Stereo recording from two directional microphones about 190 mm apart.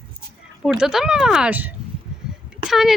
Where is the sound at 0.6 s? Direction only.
5° right (ahead or behind).